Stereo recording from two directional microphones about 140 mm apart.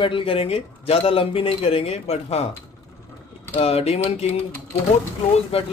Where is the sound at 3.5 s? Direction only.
45° left (ahead or behind).